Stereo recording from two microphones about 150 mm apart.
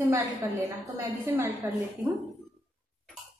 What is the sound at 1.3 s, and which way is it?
Speech, 20° right (ahead or behind).